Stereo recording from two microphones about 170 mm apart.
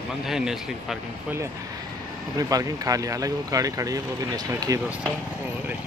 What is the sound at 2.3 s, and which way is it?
Speech, 20° right (ahead or behind).